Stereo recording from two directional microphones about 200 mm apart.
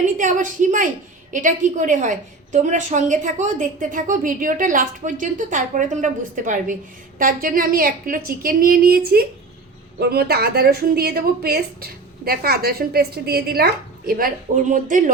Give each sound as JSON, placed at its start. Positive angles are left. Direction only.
{"t": 0.2, "sound": "a woman's voice", "side_deg": -40}